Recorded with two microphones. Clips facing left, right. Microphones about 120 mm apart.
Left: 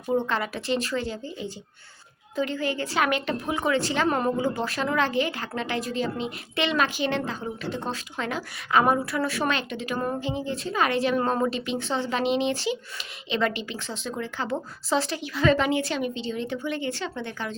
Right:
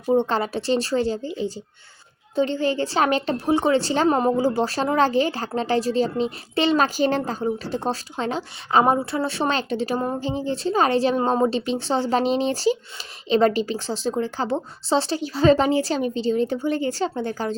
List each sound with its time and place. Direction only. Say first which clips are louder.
0.0 s a woman's voice: right 5 dB; 30° right (ahead or behind)